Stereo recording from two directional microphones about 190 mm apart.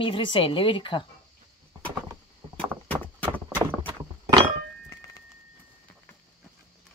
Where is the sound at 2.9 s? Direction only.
10° left (ahead or behind).